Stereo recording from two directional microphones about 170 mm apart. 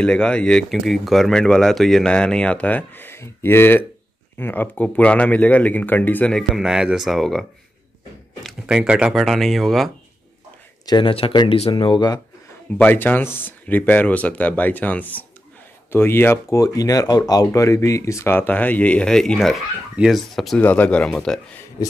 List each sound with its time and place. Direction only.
0.0 s speech: 5° left (ahead or behind)
8.5 s speech: 5° right (ahead or behind)
10.9 s speech: 30° left (ahead or behind)
12.7 s speech: 10° left (ahead or behind)